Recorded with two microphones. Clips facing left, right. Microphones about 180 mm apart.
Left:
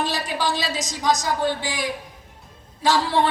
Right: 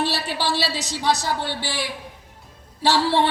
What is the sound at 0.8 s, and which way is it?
Speech, 65° right (ahead or behind).